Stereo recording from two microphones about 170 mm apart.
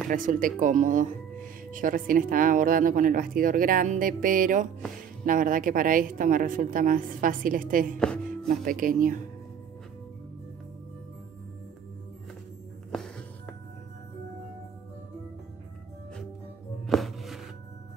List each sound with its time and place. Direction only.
0.1 s speech: 55° right (ahead or behind)
8.0 s speech: 5° left (ahead or behind)
8.5 s speech: 55° right (ahead or behind)
16.8 s music: centre (ahead or behind)